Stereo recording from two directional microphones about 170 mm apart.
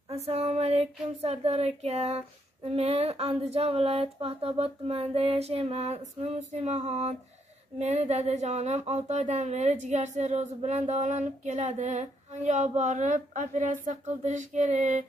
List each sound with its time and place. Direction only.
0.1 s child singing: 40° right (ahead or behind)
7.8 s speech: 40° right (ahead or behind)